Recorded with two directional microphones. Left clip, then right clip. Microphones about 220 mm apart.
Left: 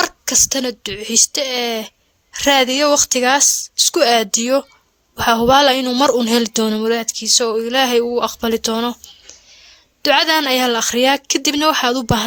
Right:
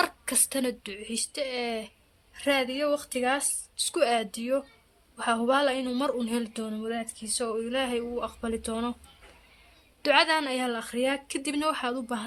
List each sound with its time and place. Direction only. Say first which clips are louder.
0.0 s a woman's voice: left 12 dB; 30° left (ahead or behind)
10.0 s a woman's voice: left 9 dB; 35° left (ahead or behind)